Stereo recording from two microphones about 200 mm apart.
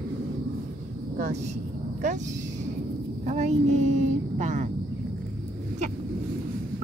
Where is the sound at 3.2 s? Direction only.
35° right (ahead or behind).